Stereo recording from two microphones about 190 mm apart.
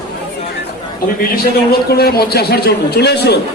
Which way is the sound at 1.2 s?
55° left (ahead or behind).